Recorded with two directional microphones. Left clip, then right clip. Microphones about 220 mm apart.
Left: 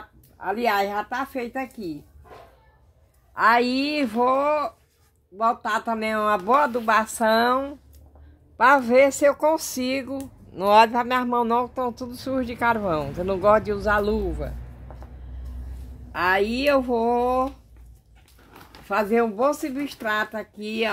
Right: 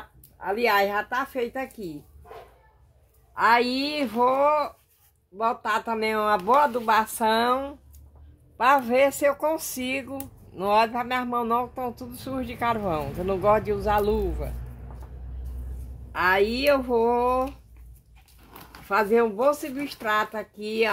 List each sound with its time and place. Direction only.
0.4 s speech: 25° left (ahead or behind)
3.3 s speech: 20° left (ahead or behind)
16.1 s speech: 20° left (ahead or behind)
18.9 s speech: 20° left (ahead or behind)